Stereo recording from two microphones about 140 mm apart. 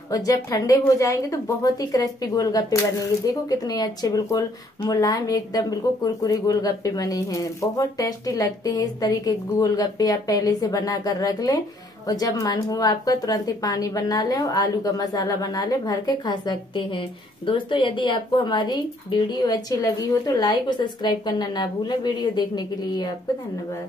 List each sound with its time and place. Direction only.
0.1 s a woman's voice: 25° left (ahead or behind)